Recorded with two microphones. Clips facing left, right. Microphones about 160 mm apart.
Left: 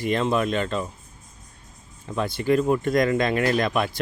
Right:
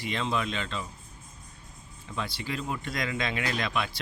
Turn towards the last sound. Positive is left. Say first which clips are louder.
# left 8 dB
turn(degrees=50)  # may be behind; listen again after turning